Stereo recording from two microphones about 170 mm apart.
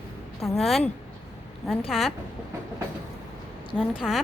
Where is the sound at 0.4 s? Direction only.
Centre (ahead or behind).